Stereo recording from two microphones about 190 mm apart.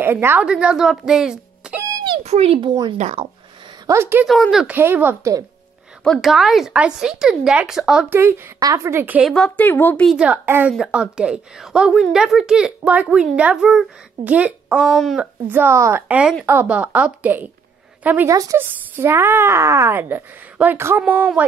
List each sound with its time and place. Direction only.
0.0 s speech: 10° right (ahead or behind)
2.2 s speech: 35° right (ahead or behind)
3.0 s speech: 35° right (ahead or behind)
3.8 s speech: 15° right (ahead or behind)
4.3 s speech: centre (ahead or behind)
6.0 s a woman's voice: centre (ahead or behind)
9.3 s a woman's voice: 5° left (ahead or behind)
10.1 s a woman's voice: 5° right (ahead or behind)